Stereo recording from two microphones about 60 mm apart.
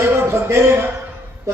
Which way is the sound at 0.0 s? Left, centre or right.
Right.